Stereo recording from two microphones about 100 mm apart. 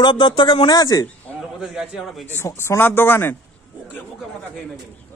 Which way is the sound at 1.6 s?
5° right (ahead or behind).